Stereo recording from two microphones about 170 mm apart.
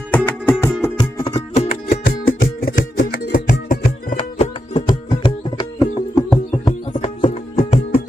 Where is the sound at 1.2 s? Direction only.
35° left (ahead or behind).